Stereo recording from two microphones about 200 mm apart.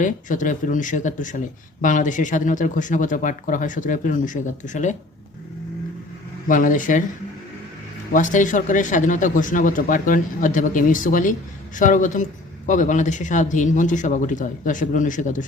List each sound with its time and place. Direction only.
0.0 s a man's voice: 40° left (ahead or behind)
6.5 s a man's voice: 40° left (ahead or behind)
8.1 s a man's voice: 40° left (ahead or behind)